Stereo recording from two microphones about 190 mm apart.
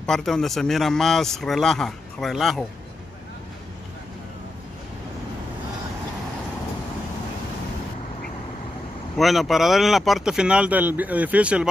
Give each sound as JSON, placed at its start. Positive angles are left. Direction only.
{"t": 0.0, "sound": "speech", "side_deg": 0}
{"t": 9.1, "sound": "speech", "side_deg": 0}